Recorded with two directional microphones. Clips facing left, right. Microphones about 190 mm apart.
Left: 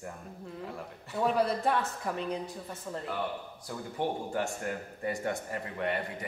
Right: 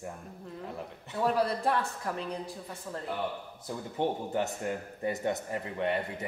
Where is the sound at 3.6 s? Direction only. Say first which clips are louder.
Right 2 dB; 20° right (ahead or behind).